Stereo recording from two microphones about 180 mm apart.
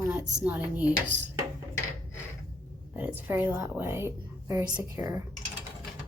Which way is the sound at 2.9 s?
10° right (ahead or behind).